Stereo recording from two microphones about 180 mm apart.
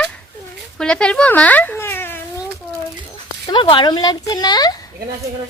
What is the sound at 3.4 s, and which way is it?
Speech, 25° left (ahead or behind).